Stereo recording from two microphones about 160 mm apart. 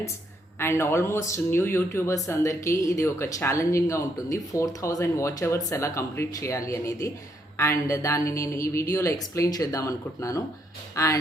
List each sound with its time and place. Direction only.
0.6 s speech: 15° left (ahead or behind)